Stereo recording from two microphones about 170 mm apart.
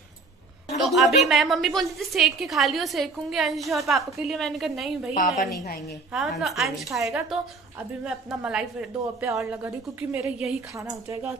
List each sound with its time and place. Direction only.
0.7 s a sound: centre (ahead or behind)
1.3 s a woman's voice: centre (ahead or behind)
5.1 s a woman's voice: 50° left (ahead or behind)
6.1 s a woman's voice: centre (ahead or behind)
10.7 s a woman's voice: 15° right (ahead or behind)